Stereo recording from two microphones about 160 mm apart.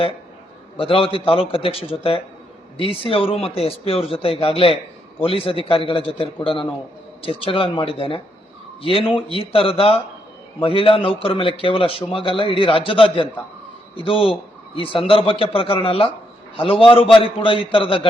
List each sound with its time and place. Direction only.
0.8 s speech: 35° left (ahead or behind)